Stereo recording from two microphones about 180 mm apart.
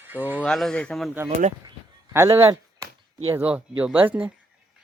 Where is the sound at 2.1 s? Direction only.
15° right (ahead or behind).